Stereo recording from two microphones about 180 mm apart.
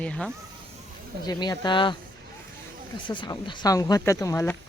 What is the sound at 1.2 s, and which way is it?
Speech, 20° left (ahead or behind).